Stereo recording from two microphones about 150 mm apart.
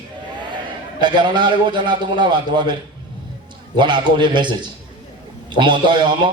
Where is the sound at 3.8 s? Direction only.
30° right (ahead or behind).